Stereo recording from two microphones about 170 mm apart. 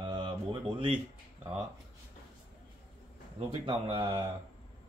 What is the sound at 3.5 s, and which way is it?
Speech, 30° right (ahead or behind).